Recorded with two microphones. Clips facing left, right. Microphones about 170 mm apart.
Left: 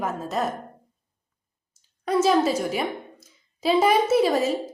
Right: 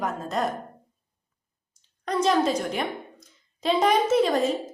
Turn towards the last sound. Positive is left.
turn(degrees=5)  # may be behind; listen again after turning